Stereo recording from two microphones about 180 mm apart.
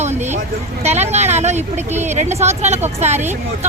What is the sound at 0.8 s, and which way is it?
Speech, 35° right (ahead or behind).